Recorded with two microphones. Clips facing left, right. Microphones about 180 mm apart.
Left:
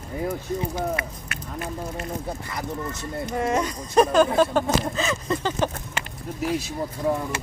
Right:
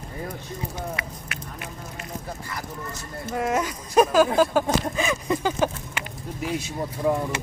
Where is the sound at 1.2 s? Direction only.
45° left (ahead or behind).